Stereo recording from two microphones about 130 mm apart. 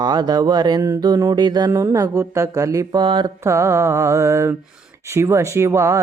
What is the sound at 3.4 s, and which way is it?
Speech, 20° right (ahead or behind).